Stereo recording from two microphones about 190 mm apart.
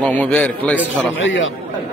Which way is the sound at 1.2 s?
90° left.